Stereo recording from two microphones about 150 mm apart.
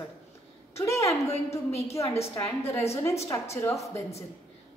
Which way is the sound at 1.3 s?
45° left (ahead or behind).